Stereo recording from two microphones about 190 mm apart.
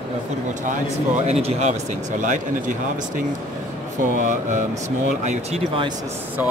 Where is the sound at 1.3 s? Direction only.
35° right (ahead or behind).